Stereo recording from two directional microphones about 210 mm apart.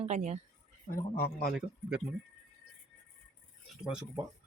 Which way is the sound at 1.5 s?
5° right (ahead or behind).